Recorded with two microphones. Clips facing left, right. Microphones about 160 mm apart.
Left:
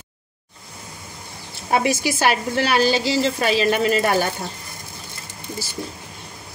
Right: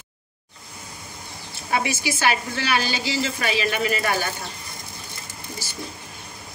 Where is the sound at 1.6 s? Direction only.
40° left (ahead or behind).